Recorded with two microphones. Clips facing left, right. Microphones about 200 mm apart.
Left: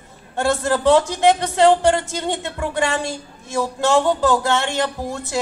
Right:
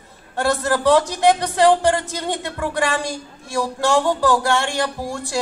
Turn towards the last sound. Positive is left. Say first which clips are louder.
# even
turn(degrees=20)  # may be behind; listen again after turning